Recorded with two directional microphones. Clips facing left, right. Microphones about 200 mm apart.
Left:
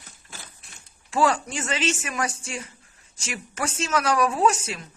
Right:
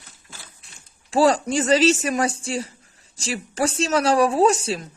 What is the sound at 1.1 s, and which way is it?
A man's voice, 35° right (ahead or behind).